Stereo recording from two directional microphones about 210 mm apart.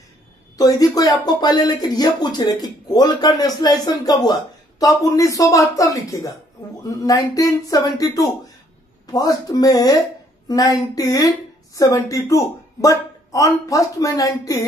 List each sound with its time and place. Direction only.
0.6 s speech: 15° left (ahead or behind)